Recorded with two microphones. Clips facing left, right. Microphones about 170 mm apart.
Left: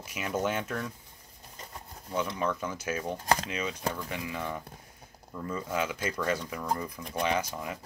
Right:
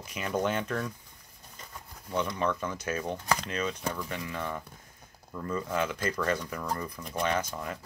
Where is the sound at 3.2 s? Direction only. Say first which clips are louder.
Left 2 dB; 40° left (ahead or behind).